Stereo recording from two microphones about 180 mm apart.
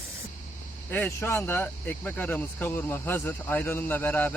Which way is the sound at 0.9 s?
10° left (ahead or behind).